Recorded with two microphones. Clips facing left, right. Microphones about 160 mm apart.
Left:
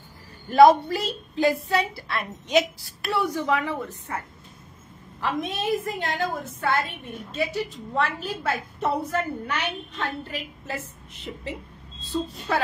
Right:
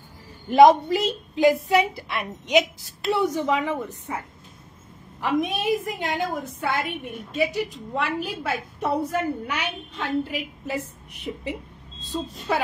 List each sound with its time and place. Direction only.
0.5 s a woman's voice: 15° right (ahead or behind)
5.2 s a woman's voice: 15° right (ahead or behind)